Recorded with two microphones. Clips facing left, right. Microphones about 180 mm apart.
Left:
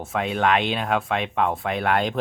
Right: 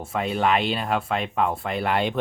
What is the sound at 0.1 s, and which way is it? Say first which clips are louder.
Speech: left 1 dB; centre (ahead or behind).